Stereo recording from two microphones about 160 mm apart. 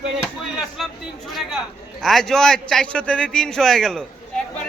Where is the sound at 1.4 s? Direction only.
Centre (ahead or behind).